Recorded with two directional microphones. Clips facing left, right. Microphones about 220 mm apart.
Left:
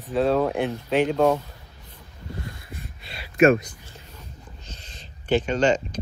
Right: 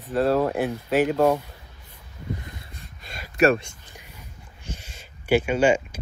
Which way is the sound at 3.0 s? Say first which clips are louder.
Left 2 dB; 45° right (ahead or behind).